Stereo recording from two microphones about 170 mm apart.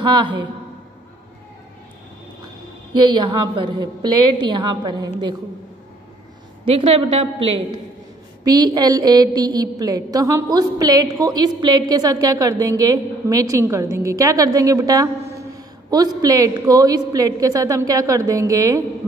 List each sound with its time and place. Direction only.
0.0 s a woman's voice: 30° right (ahead or behind)
3.2 s a woman's voice: 25° right (ahead or behind)
6.6 s a woman's voice: 35° right (ahead or behind)
8.5 s a woman's voice: 25° right (ahead or behind)